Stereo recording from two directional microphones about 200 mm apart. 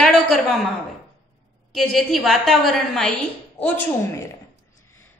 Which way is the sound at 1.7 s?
Centre (ahead or behind).